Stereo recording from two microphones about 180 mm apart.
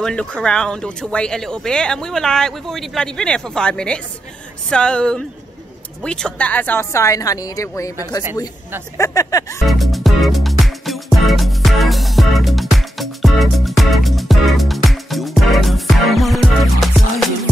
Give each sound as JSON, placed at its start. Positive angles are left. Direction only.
{"t": 0.0, "sound": "a woman's voice", "side_deg": 5}
{"t": 9.7, "sound": "music", "side_deg": 0}